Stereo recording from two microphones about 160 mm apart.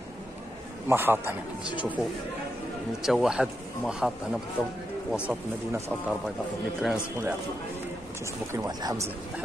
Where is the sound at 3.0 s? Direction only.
5° right (ahead or behind).